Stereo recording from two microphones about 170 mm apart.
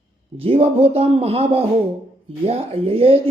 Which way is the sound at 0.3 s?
35° right (ahead or behind).